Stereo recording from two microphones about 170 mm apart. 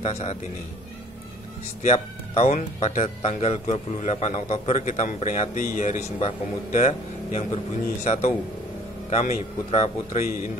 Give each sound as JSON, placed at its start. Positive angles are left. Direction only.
{"t": 0.0, "sound": "speech", "side_deg": 40}
{"t": 1.8, "sound": "speech", "side_deg": 40}